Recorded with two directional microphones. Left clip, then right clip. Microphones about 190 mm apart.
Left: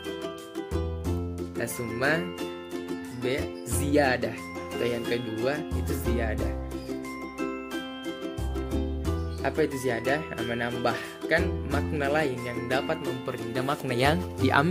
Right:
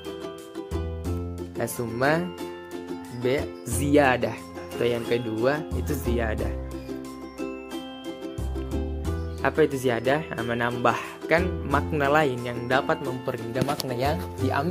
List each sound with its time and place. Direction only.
1.6 s speech: 20° right (ahead or behind)
3.3 s speech: 15° right (ahead or behind)
9.4 s speech: 15° right (ahead or behind)
13.8 s speech: 25° left (ahead or behind)